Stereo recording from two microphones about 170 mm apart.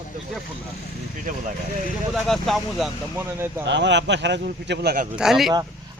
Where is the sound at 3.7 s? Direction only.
90° right.